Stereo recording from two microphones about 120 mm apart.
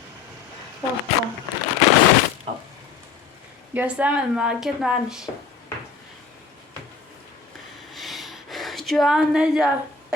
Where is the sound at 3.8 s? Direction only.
10° right (ahead or behind).